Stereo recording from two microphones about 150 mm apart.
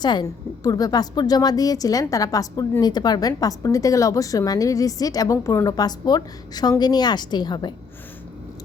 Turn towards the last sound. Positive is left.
turn(degrees=30)  # may be behind; listen again after turning